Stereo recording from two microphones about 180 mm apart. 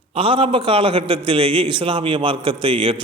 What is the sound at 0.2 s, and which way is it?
A man's voice, 30° right (ahead or behind).